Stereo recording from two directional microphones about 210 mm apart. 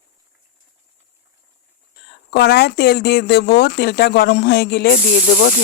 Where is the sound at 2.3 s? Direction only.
50° left (ahead or behind).